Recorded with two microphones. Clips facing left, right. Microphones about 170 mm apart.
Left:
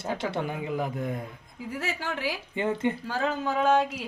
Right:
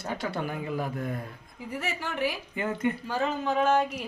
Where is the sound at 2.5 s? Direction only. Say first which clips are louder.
Left 4 dB; 25° left (ahead or behind).